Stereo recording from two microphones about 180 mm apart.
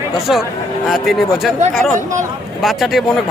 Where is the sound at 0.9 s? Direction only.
Centre (ahead or behind).